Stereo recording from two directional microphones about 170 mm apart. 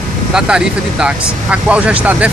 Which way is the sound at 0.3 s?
5° right (ahead or behind).